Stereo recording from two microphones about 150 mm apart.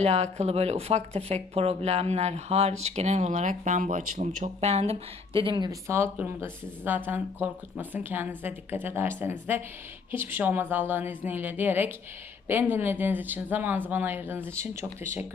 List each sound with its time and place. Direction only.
0.0 s speech: 45° right (ahead or behind)
5.9 s speech: 15° right (ahead or behind)